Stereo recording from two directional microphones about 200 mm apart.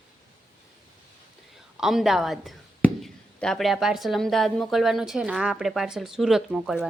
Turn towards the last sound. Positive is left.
turn(degrees=-5)  # may be behind; listen again after turning